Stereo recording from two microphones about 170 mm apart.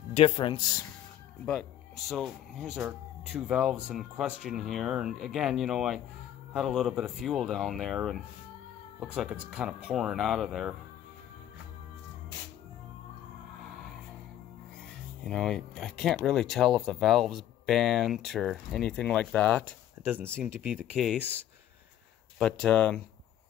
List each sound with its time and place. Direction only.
0.1 s speech: 35° left (ahead or behind)
1.4 s speech: 5° left (ahead or behind)
15.2 s speech: 5° left (ahead or behind)
20.0 s speech: 10° right (ahead or behind)
22.4 s speech: 5° left (ahead or behind)